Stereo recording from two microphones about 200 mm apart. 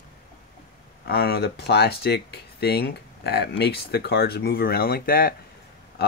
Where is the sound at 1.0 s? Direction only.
50° left (ahead or behind).